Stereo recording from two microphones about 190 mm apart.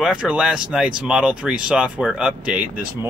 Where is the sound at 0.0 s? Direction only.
5° right (ahead or behind).